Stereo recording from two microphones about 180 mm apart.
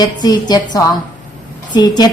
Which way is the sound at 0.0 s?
20° left (ahead or behind).